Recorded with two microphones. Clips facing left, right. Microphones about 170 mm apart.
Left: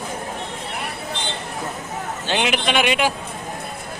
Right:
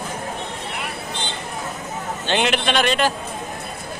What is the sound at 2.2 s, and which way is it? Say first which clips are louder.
Speech: right 1 dB; 5° left (ahead or behind).